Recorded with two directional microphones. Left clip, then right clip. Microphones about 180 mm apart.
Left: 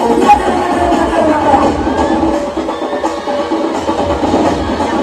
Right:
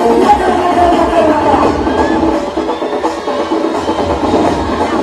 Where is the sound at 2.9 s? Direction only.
5° right (ahead or behind).